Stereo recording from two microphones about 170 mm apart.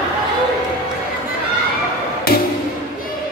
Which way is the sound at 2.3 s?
60° left (ahead or behind).